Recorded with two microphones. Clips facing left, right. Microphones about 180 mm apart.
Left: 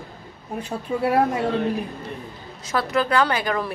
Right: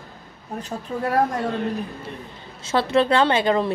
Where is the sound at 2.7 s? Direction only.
25° right (ahead or behind).